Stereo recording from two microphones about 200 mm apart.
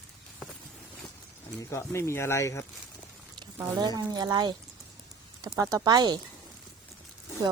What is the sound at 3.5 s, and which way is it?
A woman's voice, 20° right (ahead or behind).